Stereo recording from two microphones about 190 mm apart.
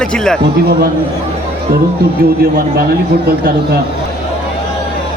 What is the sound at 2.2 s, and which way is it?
Speech, 50° right (ahead or behind).